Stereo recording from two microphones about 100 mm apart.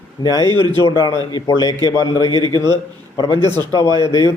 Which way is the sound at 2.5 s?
30° left (ahead or behind).